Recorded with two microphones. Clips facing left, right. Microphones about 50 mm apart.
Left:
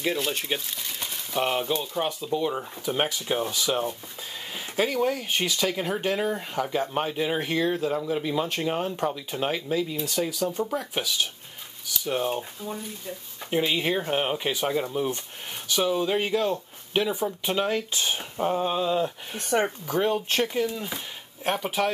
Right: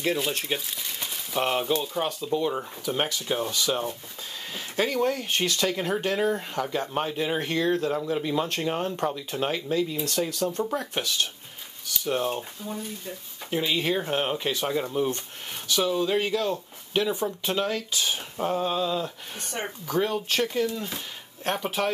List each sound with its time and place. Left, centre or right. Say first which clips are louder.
0.0 s speech: right 1 dB; centre
2.8 s speech: left 2 dB; centre
18.4 s speech: left 1 dB; centre
19.5 s speech: left 9 dB; left
19.9 s speech: right 3 dB; centre